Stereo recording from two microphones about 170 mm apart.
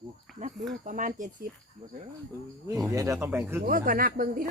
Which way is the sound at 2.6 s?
20° right (ahead or behind).